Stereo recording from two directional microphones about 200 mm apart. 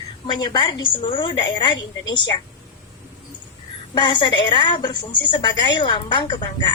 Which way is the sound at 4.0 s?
25° left (ahead or behind).